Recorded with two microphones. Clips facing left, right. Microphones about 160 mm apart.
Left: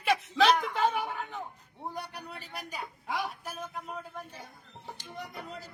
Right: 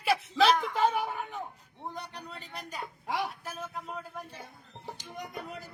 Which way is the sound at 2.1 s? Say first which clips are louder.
Left 1 dB; 5° left (ahead or behind).